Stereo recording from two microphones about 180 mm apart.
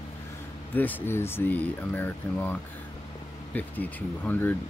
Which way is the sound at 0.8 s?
10° left (ahead or behind).